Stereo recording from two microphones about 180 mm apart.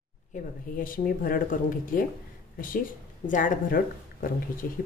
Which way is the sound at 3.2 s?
45° left (ahead or behind).